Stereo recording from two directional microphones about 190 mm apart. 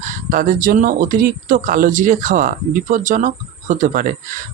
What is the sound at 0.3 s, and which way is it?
Speech, 45° right (ahead or behind).